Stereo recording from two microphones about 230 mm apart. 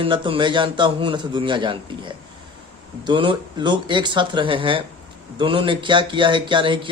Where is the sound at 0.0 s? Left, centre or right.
Right.